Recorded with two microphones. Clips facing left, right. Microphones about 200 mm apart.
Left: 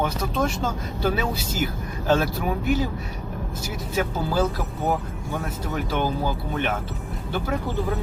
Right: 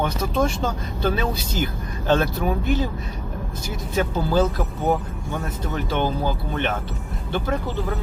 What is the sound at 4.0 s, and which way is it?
Speech, 5° left (ahead or behind).